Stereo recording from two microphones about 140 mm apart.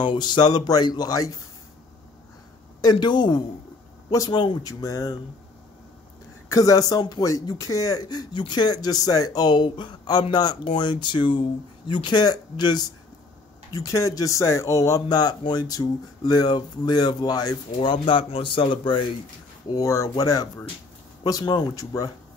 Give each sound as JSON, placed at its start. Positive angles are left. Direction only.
{"t": 0.0, "sound": "speech", "side_deg": 35}
{"t": 2.8, "sound": "speech", "side_deg": 30}
{"t": 6.5, "sound": "speech", "side_deg": 25}